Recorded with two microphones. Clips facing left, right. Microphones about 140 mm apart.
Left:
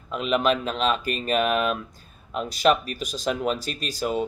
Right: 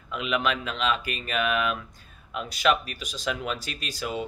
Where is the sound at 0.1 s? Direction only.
35° left (ahead or behind).